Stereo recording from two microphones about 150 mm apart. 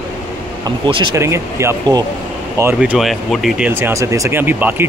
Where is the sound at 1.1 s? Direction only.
20° right (ahead or behind).